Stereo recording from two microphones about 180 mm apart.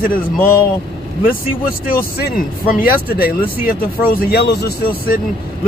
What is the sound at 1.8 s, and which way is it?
Speech, 50° left (ahead or behind).